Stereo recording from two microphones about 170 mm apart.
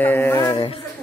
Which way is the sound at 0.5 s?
35° left (ahead or behind).